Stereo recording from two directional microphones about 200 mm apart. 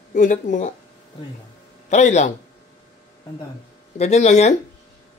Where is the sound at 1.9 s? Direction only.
35° left (ahead or behind).